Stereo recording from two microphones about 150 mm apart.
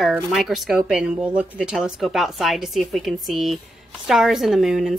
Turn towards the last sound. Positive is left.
turn(degrees=0)  # may be behind; listen again after turning